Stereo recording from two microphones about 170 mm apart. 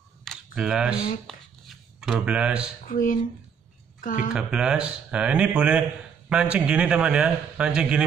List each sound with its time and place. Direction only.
0.2 s camera: centre (ahead or behind)
1.2 s speech: centre (ahead or behind)
2.9 s speech: 50° left (ahead or behind)
4.3 s speech: 5° right (ahead or behind)